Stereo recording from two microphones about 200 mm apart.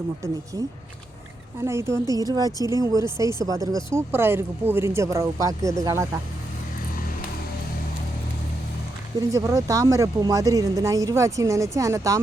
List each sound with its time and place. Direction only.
1.6 s a woman's voice: 15° right (ahead or behind)
9.3 s speech: 15° right (ahead or behind)